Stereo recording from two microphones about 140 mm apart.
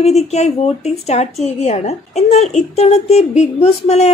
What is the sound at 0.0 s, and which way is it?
Speech, 50° left (ahead or behind).